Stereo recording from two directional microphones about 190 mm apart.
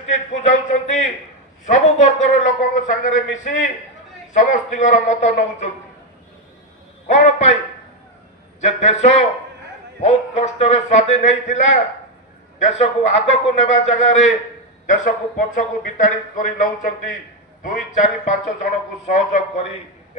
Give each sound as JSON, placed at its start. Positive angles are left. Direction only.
{"t": 0.1, "sound": "speech", "side_deg": 40}
{"t": 7.1, "sound": "speech", "side_deg": 40}
{"t": 8.5, "sound": "speech", "side_deg": 35}